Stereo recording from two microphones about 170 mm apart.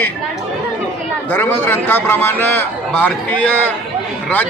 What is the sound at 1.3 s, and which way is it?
A man's voice, 10° left (ahead or behind).